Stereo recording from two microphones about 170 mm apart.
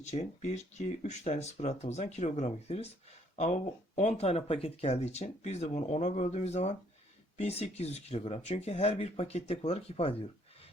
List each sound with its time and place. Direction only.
0.0 s speech: 40° left (ahead or behind)